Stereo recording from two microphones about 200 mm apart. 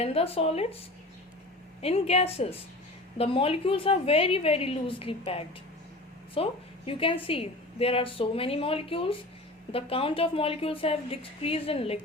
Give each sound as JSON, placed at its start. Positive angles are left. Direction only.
{"t": 0.0, "sound": "a woman's voice", "side_deg": 30}
{"t": 1.8, "sound": "a woman's voice", "side_deg": 30}